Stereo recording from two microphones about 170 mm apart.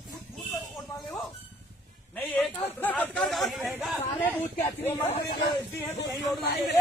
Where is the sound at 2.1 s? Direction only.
10° left (ahead or behind).